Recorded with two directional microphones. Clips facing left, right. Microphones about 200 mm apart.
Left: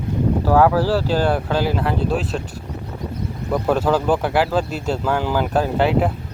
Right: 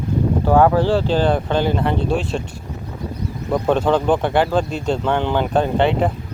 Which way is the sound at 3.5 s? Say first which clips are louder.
Right 1 dB; 5° left (ahead or behind).